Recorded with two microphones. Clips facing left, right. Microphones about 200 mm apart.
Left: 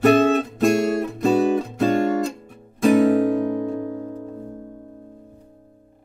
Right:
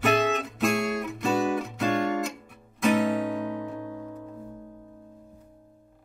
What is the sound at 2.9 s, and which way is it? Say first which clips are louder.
Music: left 9 dB; 50° left (ahead or behind).